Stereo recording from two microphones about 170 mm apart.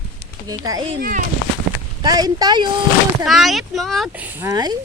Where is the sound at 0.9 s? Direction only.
55° right (ahead or behind).